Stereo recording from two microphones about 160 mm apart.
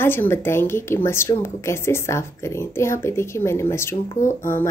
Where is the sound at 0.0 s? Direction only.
15° left (ahead or behind).